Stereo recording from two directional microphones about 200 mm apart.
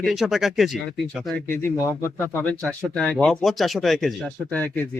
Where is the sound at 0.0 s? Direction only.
Centre (ahead or behind).